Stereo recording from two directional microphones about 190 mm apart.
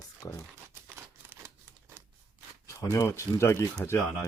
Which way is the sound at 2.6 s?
15° left (ahead or behind).